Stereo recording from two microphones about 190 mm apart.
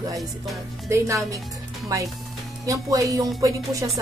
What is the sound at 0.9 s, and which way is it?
Speech, 15° right (ahead or behind).